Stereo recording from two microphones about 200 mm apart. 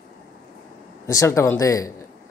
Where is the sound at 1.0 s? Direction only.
15° left (ahead or behind).